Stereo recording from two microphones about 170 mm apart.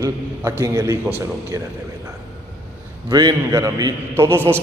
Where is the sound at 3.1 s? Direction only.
25° right (ahead or behind).